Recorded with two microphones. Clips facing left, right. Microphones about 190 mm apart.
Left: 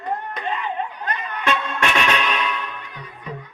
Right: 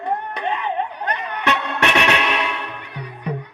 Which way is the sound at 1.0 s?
65° right (ahead or behind).